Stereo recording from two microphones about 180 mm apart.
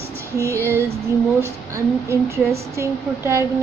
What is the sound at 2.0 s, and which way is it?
A woman's voice, 15° right (ahead or behind).